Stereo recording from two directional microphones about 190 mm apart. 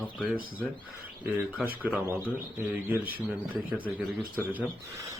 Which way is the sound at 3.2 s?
10° right (ahead or behind).